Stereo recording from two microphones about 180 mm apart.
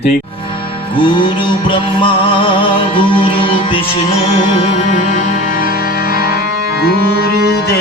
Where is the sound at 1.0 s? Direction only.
25° left (ahead or behind).